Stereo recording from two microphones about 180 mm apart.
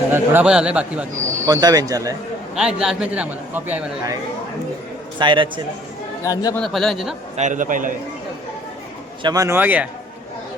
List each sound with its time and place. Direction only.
0.1 s a man's voice: 10° right (ahead or behind)
1.5 s speech: 20° right (ahead or behind)
2.6 s a man's voice: 5° right (ahead or behind)
5.2 s speech: 25° right (ahead or behind)
6.2 s a man's voice: 20° left (ahead or behind)
6.6 s speech: centre (ahead or behind)
7.3 s a man's voice: 45° right (ahead or behind)
9.2 s a man's voice: 20° right (ahead or behind)